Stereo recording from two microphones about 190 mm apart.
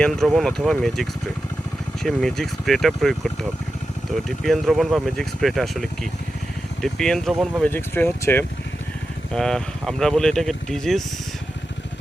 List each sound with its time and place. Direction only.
0.0 s speech: centre (ahead or behind)
2.0 s speech: centre (ahead or behind)